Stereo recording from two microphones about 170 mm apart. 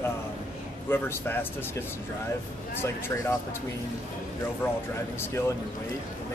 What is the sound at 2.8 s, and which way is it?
Speech, 15° left (ahead or behind).